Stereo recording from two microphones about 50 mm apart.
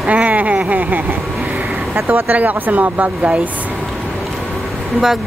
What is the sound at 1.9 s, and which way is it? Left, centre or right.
Speech, right.